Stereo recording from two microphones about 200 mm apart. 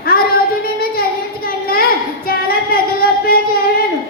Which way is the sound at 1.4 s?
50° left (ahead or behind).